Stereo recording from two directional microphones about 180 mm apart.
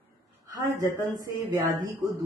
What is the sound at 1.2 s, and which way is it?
Speech, 20° right (ahead or behind).